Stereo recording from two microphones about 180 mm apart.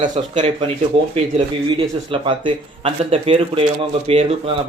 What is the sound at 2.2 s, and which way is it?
Speech, 30° right (ahead or behind).